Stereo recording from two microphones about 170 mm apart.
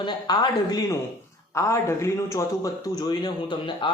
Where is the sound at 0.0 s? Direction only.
25° left (ahead or behind).